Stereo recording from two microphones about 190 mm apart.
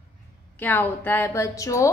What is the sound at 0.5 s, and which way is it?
A woman's voice, 10° left (ahead or behind).